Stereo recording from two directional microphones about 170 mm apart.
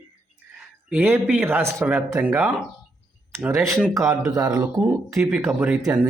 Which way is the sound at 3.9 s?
20° right (ahead or behind).